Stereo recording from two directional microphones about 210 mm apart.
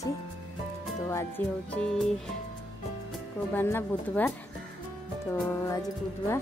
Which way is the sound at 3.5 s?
10° left (ahead or behind).